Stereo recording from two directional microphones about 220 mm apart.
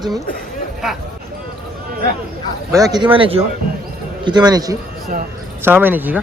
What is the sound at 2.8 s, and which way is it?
A man's voice, 20° right (ahead or behind).